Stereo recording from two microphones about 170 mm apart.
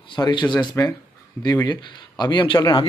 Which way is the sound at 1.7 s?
25° left (ahead or behind).